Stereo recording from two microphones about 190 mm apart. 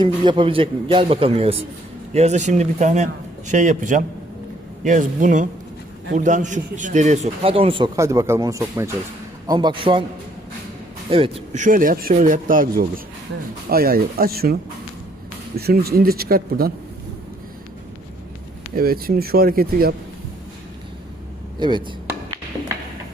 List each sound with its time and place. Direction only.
0.0 s a man's voice: 25° right (ahead or behind)
7.9 s a man's voice: 15° right (ahead or behind)
11.1 s speech: 30° right (ahead or behind); by 12.6 s 45° right (ahead or behind)
13.7 s speech: 50° right (ahead or behind)
15.5 s speech: 55° right (ahead or behind)
18.7 s speech: 50° right (ahead or behind)
21.6 s a man's voice: 25° right (ahead or behind)